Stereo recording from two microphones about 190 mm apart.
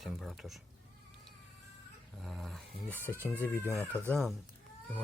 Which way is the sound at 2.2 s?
Centre (ahead or behind).